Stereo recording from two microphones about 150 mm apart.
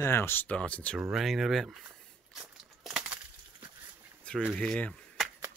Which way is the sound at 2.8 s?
5° right (ahead or behind).